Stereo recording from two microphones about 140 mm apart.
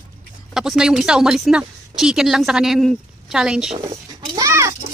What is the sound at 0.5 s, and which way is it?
Speech, 5° right (ahead or behind).